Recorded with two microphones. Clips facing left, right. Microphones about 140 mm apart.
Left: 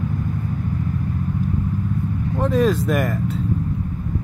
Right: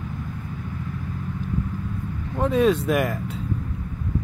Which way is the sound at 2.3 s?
Centre (ahead or behind).